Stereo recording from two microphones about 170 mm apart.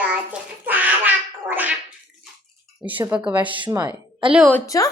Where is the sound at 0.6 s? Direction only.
10° right (ahead or behind).